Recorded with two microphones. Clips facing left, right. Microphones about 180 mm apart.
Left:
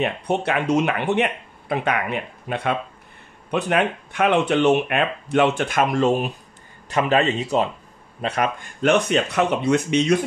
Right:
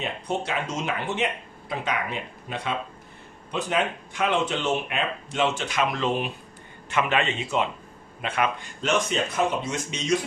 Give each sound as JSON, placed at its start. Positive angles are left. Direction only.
{"t": 0.0, "sound": "a man's voice", "side_deg": 65}
{"t": 8.8, "sound": "speech", "side_deg": 65}